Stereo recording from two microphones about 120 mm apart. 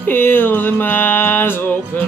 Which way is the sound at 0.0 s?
15° left (ahead or behind).